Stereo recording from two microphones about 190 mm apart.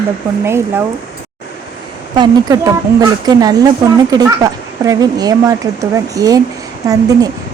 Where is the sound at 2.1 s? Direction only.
20° right (ahead or behind).